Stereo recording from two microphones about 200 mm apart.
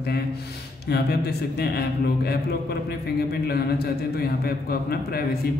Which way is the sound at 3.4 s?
50° left (ahead or behind).